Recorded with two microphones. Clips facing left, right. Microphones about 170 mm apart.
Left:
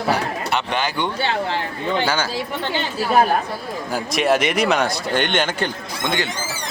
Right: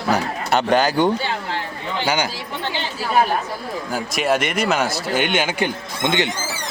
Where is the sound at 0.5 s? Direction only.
40° right (ahead or behind).